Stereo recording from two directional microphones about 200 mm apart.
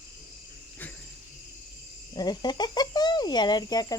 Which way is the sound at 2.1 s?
20° left (ahead or behind).